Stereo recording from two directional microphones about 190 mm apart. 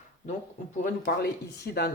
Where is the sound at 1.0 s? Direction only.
60° left (ahead or behind).